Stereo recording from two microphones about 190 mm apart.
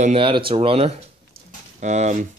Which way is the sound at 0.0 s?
30° right (ahead or behind).